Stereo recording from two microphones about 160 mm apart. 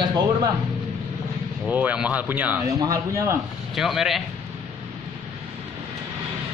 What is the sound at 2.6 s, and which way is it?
Speech, 20° right (ahead or behind).